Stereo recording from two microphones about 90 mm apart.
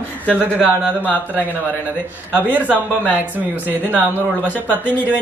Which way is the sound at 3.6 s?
20° right (ahead or behind).